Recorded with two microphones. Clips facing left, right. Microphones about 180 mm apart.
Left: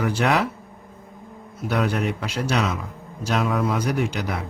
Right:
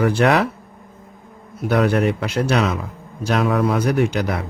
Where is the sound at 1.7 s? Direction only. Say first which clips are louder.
Right 6 dB; 60° right (ahead or behind).